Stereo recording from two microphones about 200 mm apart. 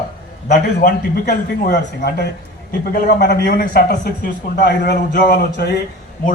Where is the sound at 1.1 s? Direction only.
50° left (ahead or behind).